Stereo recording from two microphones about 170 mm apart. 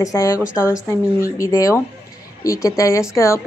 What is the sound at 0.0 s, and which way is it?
A woman's voice, 20° left (ahead or behind).